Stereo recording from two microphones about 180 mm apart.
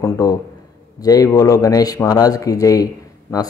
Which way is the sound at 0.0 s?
20° left (ahead or behind).